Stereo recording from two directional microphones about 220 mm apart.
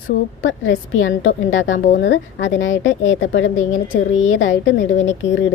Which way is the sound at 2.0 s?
55° left (ahead or behind).